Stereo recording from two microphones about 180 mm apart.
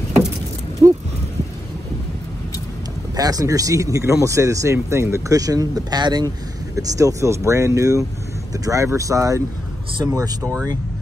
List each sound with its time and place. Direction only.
3.2 s speech: 20° right (ahead or behind)